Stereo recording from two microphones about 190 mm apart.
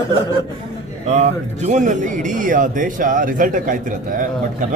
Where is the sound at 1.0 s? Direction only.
35° right (ahead or behind).